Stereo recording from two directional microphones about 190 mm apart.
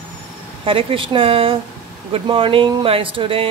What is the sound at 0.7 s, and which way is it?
Speech, 30° right (ahead or behind).